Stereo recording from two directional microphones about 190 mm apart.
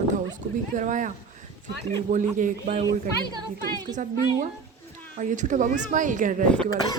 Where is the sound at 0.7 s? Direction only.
40° right (ahead or behind).